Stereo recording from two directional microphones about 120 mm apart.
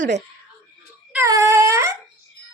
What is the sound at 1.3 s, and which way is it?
Speech, 25° right (ahead or behind).